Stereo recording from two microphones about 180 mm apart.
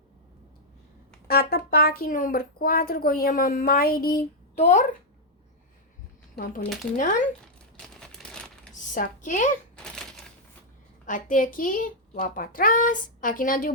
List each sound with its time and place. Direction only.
1.3 s speech: 55° left (ahead or behind)
4.5 s a child's voice: 40° left (ahead or behind)
6.9 s a child's voice: 45° left (ahead or behind)
8.0 s a sound: 5° left (ahead or behind)
9.0 s a child's voice: 45° left (ahead or behind)
9.7 s a sound: 5° left (ahead or behind)
11.0 s a child's voice: 45° left (ahead or behind)